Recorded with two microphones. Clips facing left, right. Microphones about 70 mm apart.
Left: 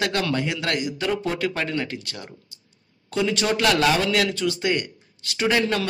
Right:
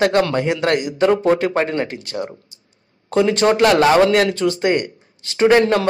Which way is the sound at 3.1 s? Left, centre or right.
Right.